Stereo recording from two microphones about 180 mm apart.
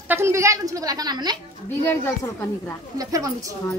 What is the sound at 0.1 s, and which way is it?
A woman's voice, 15° right (ahead or behind).